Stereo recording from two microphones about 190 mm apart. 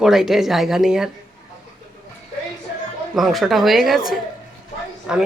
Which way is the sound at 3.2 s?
Centre (ahead or behind).